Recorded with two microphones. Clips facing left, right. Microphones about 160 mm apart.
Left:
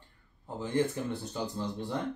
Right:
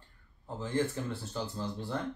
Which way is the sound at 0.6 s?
15° left (ahead or behind).